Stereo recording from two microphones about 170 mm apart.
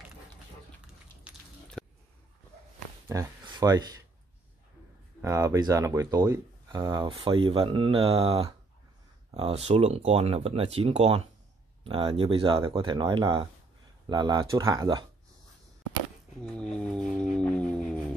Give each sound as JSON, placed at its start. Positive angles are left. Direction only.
{"t": 1.3, "sound": "squish", "side_deg": -10}
{"t": 1.8, "sound": "a sound", "side_deg": 5}
{"t": 3.1, "sound": "speech", "side_deg": -20}
{"t": 5.2, "sound": "speech", "side_deg": -20}
{"t": 16.5, "sound": "music", "side_deg": 5}